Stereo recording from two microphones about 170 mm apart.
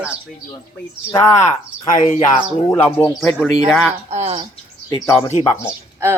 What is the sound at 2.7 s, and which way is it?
Speech, 10° left (ahead or behind).